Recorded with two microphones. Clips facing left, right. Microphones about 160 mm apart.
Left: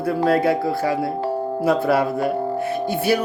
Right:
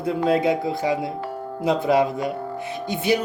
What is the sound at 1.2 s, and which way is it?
Music, 30° left (ahead or behind).